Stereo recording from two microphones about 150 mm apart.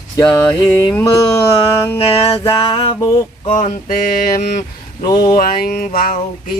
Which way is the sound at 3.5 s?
60° left (ahead or behind).